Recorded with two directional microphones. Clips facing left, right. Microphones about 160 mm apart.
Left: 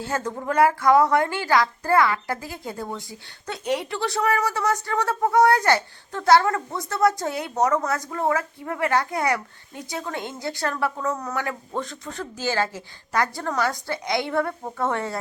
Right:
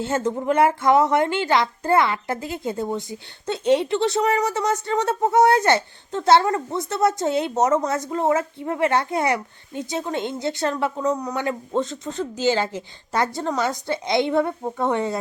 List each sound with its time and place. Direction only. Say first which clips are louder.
0.0 s speech: right 5 dB; 20° right (ahead or behind)